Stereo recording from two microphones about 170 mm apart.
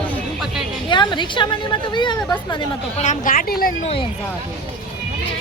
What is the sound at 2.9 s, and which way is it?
Speech, 50° left (ahead or behind).